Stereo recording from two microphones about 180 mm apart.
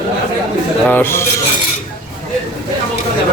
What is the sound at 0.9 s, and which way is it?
Speech, 10° left (ahead or behind).